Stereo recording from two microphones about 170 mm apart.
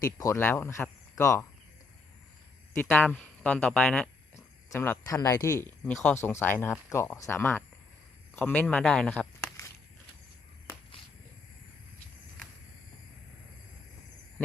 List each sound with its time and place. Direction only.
0.0 s speech: 20° left (ahead or behind)
2.9 s speech: 10° left (ahead or behind)
5.8 s speech: 10° left (ahead or behind)